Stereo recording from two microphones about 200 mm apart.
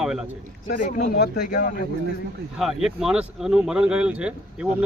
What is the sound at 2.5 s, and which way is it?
A man's voice, centre (ahead or behind).